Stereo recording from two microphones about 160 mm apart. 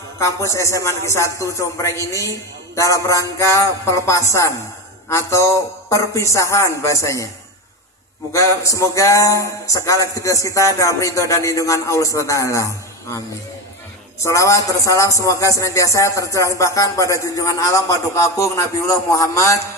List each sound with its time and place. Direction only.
0.2 s speech: 20° left (ahead or behind)
8.3 s speech: 20° left (ahead or behind)
14.2 s speech: 20° left (ahead or behind)